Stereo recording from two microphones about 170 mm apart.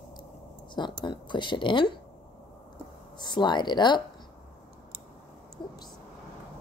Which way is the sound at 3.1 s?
25° left (ahead or behind).